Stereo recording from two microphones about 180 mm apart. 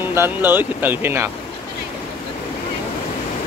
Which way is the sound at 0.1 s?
10° right (ahead or behind).